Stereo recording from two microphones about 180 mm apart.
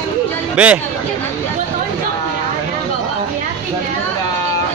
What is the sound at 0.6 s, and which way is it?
Speech, 5° right (ahead or behind).